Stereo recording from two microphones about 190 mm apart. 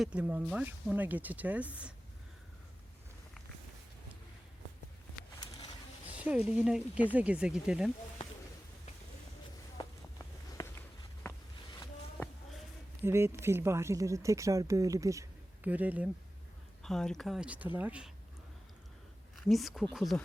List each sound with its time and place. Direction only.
0.0 s speech: 5° right (ahead or behind)
6.1 s speech: 5° right (ahead or behind)
10.6 s run: 20° left (ahead or behind)
13.1 s speech: 15° right (ahead or behind)
16.8 s speech: centre (ahead or behind)
19.5 s speech: centre (ahead or behind)